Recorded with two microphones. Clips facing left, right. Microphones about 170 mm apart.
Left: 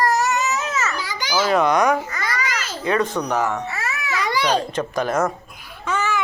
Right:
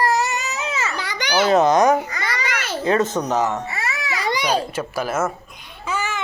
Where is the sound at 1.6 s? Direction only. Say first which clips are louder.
Right 2 dB; 40° right (ahead or behind).